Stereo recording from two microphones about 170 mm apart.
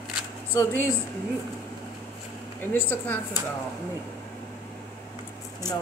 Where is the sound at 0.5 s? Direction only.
15° left (ahead or behind).